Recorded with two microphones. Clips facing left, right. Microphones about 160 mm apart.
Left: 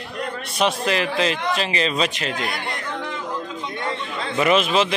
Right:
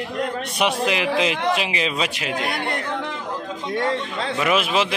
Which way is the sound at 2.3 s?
60° right (ahead or behind).